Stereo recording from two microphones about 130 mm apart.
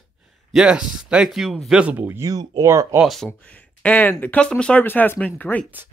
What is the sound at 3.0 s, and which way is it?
Speech, centre (ahead or behind).